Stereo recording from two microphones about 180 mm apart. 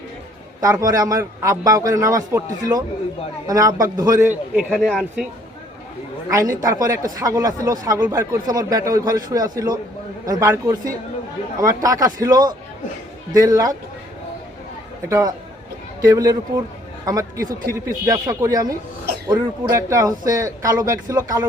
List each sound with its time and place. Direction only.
0.6 s a man's voice: 20° right (ahead or behind)
4.7 s speech: centre (ahead or behind)
6.3 s a man's voice: 20° right (ahead or behind)
15.1 s a man's voice: 20° right (ahead or behind)